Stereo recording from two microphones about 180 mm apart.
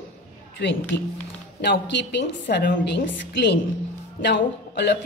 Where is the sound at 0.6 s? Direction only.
80° left.